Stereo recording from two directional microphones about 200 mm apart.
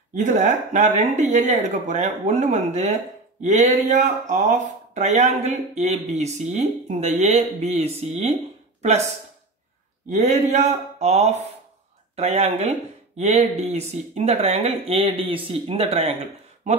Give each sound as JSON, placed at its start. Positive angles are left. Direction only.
{"t": 0.1, "sound": "speech", "side_deg": -35}
{"t": 10.0, "sound": "speech", "side_deg": -35}